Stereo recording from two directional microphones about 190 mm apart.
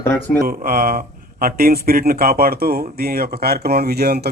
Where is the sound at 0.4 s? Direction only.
50° right (ahead or behind).